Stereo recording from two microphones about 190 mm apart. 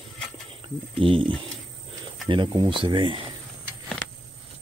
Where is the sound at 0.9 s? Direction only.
30° right (ahead or behind).